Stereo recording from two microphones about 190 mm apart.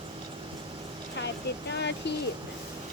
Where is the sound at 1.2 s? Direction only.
65° left (ahead or behind).